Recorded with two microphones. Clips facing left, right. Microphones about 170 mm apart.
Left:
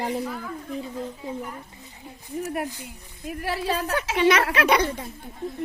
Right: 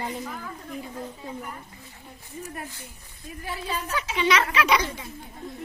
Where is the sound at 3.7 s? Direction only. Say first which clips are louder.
Left 3 dB; 65° left (ahead or behind).